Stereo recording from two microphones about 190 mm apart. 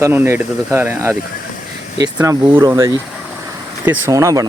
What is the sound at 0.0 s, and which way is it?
Speech, 10° right (ahead or behind).